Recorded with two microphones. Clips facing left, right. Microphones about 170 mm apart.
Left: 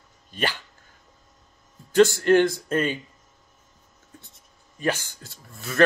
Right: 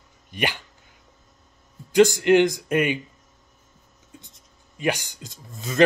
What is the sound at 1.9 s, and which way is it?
Speech, 15° right (ahead or behind).